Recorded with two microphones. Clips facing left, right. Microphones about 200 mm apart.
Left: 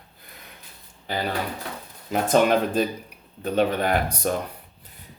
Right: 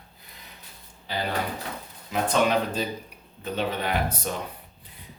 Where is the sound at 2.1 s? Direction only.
45° left (ahead or behind).